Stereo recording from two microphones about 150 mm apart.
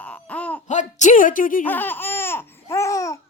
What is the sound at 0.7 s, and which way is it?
Speech, 55° left (ahead or behind).